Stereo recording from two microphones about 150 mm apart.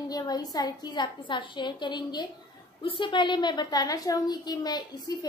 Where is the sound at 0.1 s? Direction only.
25° left (ahead or behind).